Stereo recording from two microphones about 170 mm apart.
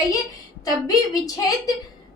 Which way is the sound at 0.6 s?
20° left (ahead or behind).